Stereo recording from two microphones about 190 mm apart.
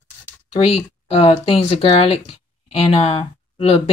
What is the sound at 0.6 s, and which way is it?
Speech, 30° left (ahead or behind).